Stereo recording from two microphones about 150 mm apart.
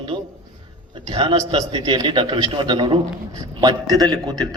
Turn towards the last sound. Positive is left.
turn(degrees=-25)  # may be behind; listen again after turning